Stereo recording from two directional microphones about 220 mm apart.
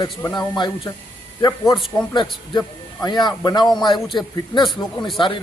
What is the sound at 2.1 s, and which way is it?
Speech, 20° left (ahead or behind).